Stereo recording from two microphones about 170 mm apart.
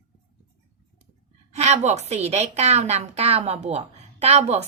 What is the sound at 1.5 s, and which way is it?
A woman's voice, 40° right (ahead or behind).